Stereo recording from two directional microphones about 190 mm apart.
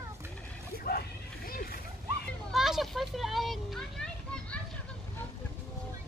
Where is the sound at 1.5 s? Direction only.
50° left (ahead or behind).